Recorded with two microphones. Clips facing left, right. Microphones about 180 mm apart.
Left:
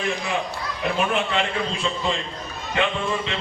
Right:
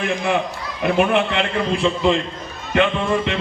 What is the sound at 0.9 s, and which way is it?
Speech, 65° right (ahead or behind).